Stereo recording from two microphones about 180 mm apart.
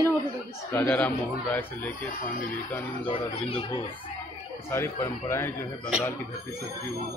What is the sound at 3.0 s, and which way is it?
Speech, 30° left (ahead or behind).